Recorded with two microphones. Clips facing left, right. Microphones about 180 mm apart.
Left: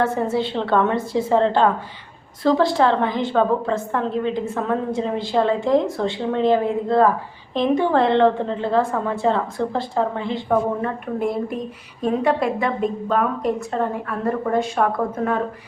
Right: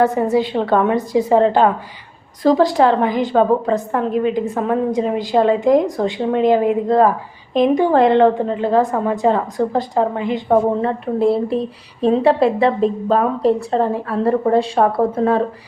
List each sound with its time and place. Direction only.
0.0 s a woman's voice: 15° right (ahead or behind)
10.5 s a woman's voice: 30° right (ahead or behind)